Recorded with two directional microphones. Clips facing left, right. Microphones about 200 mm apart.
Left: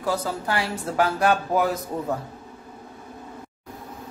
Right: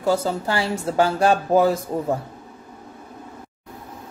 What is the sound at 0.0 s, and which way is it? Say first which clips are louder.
Speech: right 5 dB; 25° right (ahead or behind).